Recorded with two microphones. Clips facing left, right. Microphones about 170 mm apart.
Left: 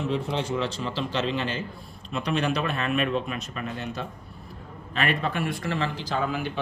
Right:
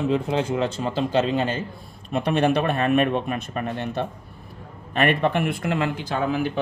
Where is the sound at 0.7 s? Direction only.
50° right (ahead or behind).